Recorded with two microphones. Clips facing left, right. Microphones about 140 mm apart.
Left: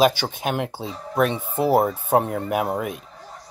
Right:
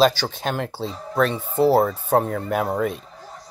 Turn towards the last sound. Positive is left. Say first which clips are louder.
# right 1 dB
turn(degrees=10)  # may be behind; listen again after turning